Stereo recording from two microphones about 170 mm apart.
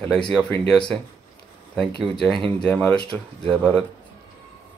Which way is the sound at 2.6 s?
5° left (ahead or behind).